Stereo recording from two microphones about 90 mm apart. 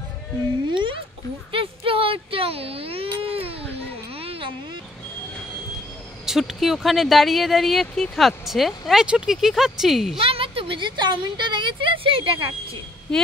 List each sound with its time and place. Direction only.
1.5 s speech: 85° right
4.1 s a sound: 90° right
6.2 s speech: 5° right (ahead or behind)
10.2 s a woman's voice: 90° right
13.1 s speech: 5° left (ahead or behind)